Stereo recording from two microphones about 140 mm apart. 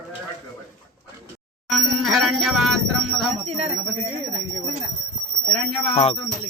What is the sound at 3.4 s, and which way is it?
Speech, 50° right (ahead or behind).